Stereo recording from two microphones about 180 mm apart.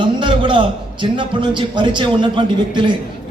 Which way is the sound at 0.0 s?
25° right (ahead or behind).